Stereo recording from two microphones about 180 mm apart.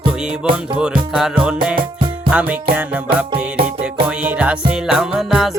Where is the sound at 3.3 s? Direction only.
35° right (ahead or behind).